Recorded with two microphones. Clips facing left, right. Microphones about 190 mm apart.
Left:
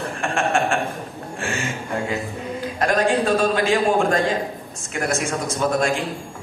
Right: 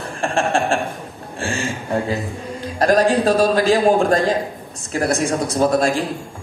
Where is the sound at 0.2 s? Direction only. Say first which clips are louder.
Right 3 dB; 30° right (ahead or behind).